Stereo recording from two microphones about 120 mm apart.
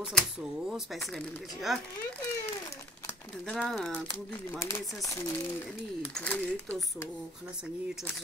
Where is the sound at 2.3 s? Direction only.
25° left (ahead or behind).